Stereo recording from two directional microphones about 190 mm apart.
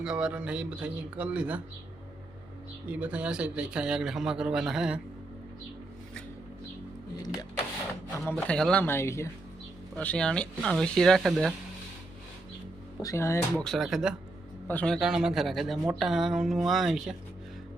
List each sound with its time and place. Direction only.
0.0 s speech: 5° right (ahead or behind)
2.9 s a man's voice: 5° right (ahead or behind)
8.2 s a man's voice: 5° left (ahead or behind)
13.0 s speech: 15° left (ahead or behind)
13.7 s a man's voice: centre (ahead or behind)